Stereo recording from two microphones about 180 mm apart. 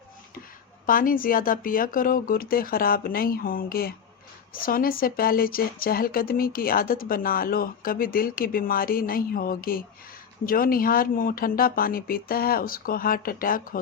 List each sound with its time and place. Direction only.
0.9 s speech: 50° left (ahead or behind)